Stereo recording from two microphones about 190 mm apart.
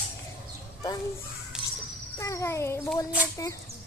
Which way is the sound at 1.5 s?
5° right (ahead or behind).